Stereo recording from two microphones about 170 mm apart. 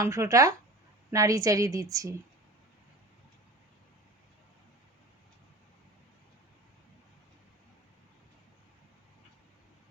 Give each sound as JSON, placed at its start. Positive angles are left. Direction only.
{"t": 0.0, "sound": "a woman's voice", "side_deg": -20}